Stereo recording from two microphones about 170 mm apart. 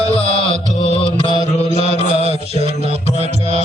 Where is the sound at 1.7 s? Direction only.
40° right (ahead or behind).